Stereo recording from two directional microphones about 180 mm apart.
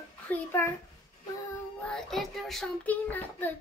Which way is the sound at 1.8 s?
5° left (ahead or behind).